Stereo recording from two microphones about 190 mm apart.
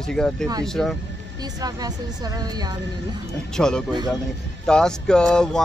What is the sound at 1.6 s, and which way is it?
Speech, 20° right (ahead or behind).